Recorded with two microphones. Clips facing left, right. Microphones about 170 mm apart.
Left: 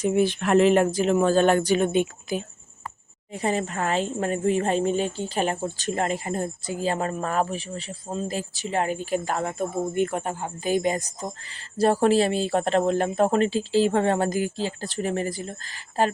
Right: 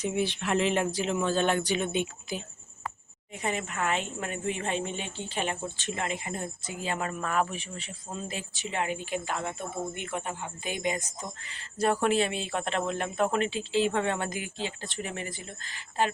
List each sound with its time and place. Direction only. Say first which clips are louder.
0.0 s speech: left 8 dB; 45° left (ahead or behind)
3.3 s a woman's voice: left 6 dB; 35° left (ahead or behind)